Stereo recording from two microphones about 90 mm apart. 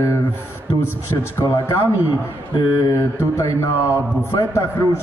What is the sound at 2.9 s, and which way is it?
A man's voice, 40° left (ahead or behind).